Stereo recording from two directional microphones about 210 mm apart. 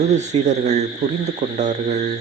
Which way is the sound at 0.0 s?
35° right (ahead or behind).